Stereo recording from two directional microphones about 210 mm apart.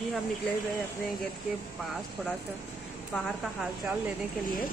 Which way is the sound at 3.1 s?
Centre (ahead or behind).